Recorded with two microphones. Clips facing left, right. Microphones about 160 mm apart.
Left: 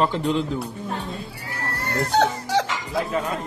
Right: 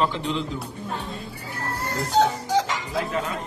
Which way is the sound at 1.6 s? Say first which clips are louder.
Left 3 dB; 70° left (ahead or behind).